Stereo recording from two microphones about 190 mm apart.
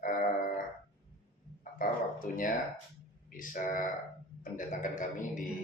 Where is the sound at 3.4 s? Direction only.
45° left (ahead or behind).